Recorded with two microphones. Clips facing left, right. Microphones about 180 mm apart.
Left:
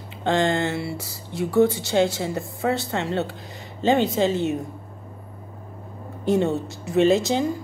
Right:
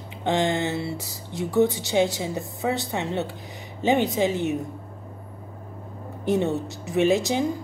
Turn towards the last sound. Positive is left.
turn(degrees=-15)  # may be behind; listen again after turning